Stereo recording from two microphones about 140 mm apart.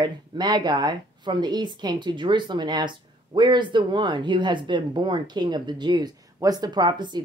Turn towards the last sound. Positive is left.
turn(degrees=-30)  # may be behind; listen again after turning